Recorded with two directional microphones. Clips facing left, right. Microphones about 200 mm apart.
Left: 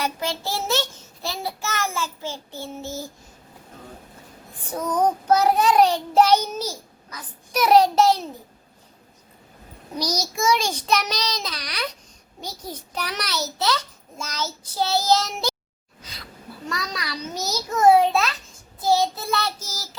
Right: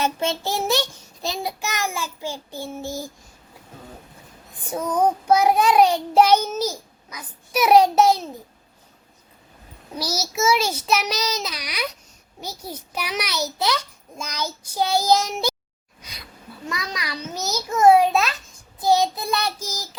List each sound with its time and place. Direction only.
0.0 s a child's voice: 25° right (ahead or behind)
4.7 s a child's voice: 10° right (ahead or behind)
9.9 s child singing: 5° right (ahead or behind)
12.4 s a child's voice: 10° right (ahead or behind)
16.0 s sneeze: 15° right (ahead or behind)
16.6 s a child's voice: 10° right (ahead or behind)